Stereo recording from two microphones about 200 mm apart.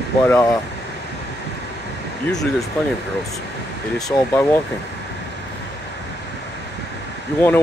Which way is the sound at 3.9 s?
5° left (ahead or behind).